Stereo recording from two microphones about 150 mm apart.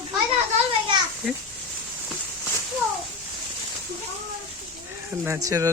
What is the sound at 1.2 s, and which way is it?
Speech, centre (ahead or behind).